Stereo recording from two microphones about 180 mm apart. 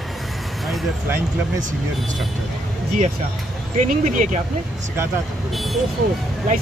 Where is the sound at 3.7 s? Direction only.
45° right (ahead or behind).